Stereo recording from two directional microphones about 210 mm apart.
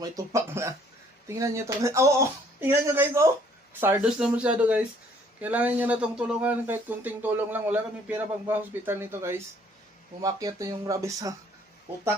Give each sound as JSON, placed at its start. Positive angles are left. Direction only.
{"t": 0.2, "sound": "speech", "side_deg": -15}